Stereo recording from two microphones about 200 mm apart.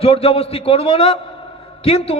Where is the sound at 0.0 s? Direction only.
30° left (ahead or behind).